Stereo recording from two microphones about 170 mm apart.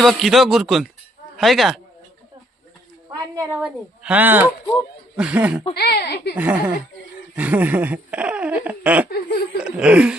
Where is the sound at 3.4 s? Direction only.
10° right (ahead or behind).